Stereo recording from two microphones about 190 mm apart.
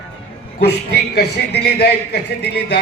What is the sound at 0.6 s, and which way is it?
Speech, 60° left (ahead or behind).